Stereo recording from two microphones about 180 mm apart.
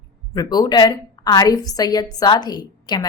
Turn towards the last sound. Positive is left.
turn(degrees=25)  # may be behind; listen again after turning